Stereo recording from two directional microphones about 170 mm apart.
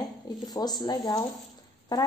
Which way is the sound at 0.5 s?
25° left (ahead or behind).